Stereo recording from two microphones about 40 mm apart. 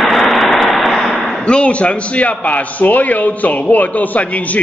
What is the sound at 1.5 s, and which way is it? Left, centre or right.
A man's voice, left.